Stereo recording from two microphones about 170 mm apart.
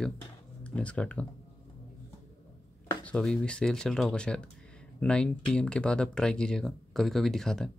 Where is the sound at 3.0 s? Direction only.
5° left (ahead or behind).